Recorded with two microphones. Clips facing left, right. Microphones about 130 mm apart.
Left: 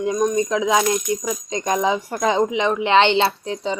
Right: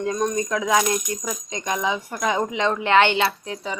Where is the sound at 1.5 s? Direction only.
35° left (ahead or behind).